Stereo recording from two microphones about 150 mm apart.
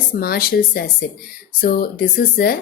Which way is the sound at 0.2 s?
85° left.